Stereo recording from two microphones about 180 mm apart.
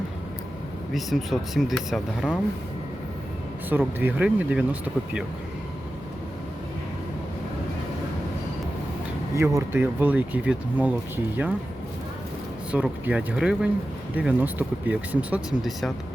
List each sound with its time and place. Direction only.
0.9 s speech: centre (ahead or behind)
3.7 s speech: 10° right (ahead or behind)
9.3 s speech: 15° right (ahead or behind)
12.7 s speech: 5° right (ahead or behind)